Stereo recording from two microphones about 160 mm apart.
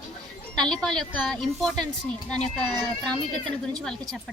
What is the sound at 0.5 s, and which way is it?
A woman's voice, 5° left (ahead or behind).